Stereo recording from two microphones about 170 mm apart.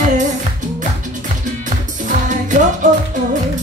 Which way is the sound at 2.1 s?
45° right (ahead or behind).